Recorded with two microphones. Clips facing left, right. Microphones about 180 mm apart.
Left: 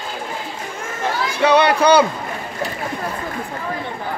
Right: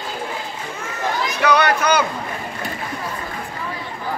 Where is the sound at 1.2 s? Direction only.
30° left (ahead or behind).